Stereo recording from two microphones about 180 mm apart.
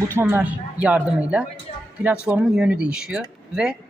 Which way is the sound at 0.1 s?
10° right (ahead or behind).